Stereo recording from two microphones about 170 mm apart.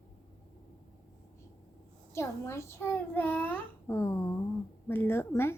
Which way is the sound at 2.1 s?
15° left (ahead or behind).